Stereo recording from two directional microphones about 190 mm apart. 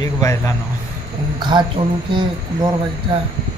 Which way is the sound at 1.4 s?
25° right (ahead or behind).